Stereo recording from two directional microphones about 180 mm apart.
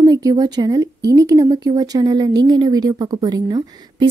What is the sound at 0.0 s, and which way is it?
Speech, 20° right (ahead or behind).